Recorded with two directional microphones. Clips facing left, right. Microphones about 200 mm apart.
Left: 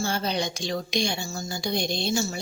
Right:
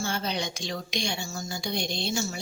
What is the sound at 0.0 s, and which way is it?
A woman's voice, 35° left (ahead or behind).